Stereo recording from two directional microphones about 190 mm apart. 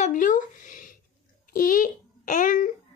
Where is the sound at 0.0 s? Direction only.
45° left (ahead or behind).